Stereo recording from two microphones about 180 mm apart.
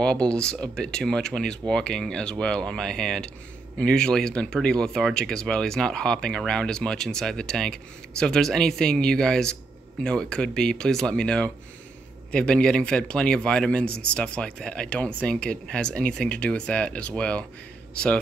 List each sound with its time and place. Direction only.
0.0 s speech: 5° left (ahead or behind)